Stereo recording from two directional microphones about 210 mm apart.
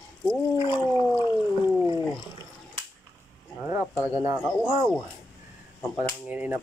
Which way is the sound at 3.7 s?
15° right (ahead or behind).